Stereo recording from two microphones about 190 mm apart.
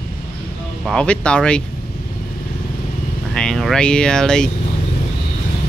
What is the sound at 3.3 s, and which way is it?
Speech, 5° left (ahead or behind).